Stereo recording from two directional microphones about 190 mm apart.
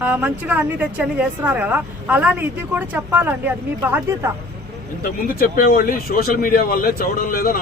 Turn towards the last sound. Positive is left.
turn(degrees=50)  # may be behind; listen again after turning